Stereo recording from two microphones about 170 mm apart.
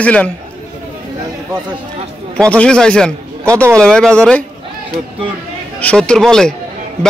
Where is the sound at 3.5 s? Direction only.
15° right (ahead or behind).